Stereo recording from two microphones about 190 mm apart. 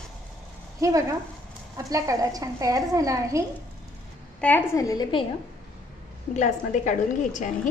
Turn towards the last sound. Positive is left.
turn(degrees=40)  # may be behind; listen again after turning